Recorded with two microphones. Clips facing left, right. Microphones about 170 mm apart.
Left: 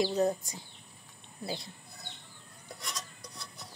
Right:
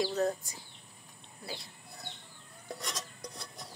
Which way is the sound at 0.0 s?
20° left (ahead or behind).